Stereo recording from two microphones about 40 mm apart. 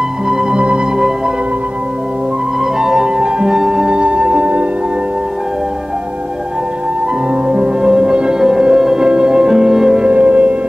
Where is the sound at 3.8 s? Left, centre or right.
Right.